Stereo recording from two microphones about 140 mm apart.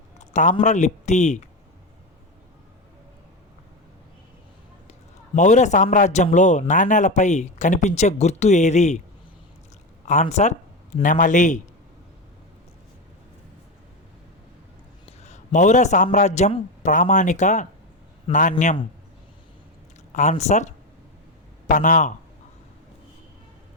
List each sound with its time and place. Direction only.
0.2 s a sound: 60° left (ahead or behind)
0.6 s speech: 60° left (ahead or behind)
4.9 s a man's voice: 60° left (ahead or behind)
10.1 s speech: 55° left (ahead or behind)
11.0 s speech: 65° left (ahead or behind)
15.2 s a man's voice: 55° left (ahead or behind)
16.8 s speech: 65° left (ahead or behind)
20.1 s speech: 55° left (ahead or behind)
21.7 s speech: 65° left (ahead or behind)